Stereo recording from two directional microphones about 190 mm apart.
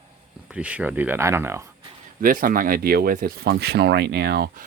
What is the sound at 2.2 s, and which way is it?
Speech, 45° right (ahead or behind).